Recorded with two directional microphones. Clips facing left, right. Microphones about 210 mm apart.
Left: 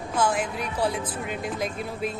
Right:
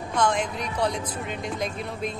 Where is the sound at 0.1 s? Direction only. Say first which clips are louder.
Right 1 dB; 5° left (ahead or behind).